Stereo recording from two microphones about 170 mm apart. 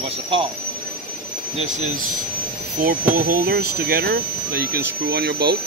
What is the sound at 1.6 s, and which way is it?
Speech, 40° right (ahead or behind).